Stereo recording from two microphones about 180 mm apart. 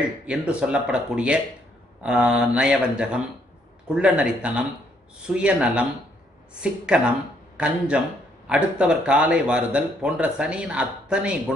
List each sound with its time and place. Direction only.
0.3 s speech: 5° right (ahead or behind)
7.5 s speech: 5° right (ahead or behind)